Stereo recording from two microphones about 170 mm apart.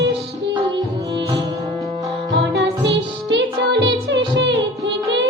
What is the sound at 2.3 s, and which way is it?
Music, 90° right.